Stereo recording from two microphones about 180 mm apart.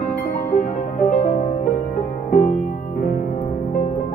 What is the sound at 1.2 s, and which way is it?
Music, 35° left (ahead or behind).